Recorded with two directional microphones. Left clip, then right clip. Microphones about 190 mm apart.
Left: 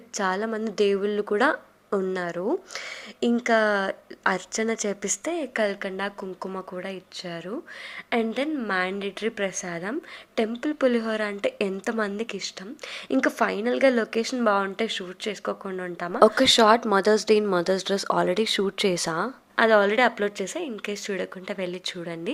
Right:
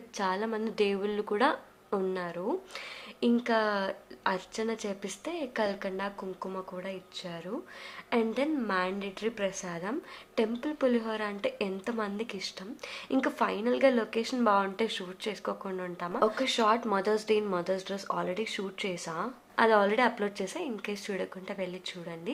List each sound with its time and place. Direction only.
0.1 s a woman's voice: 30° left (ahead or behind)
19.5 s a woman's voice: 25° left (ahead or behind)